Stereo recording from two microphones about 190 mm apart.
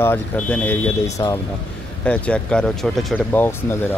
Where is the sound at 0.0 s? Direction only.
10° left (ahead or behind).